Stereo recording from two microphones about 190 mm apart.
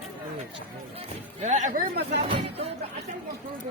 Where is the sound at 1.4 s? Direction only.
40° right (ahead or behind); by 2.2 s 55° right (ahead or behind).